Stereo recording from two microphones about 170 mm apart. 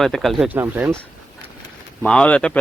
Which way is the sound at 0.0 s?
Centre (ahead or behind).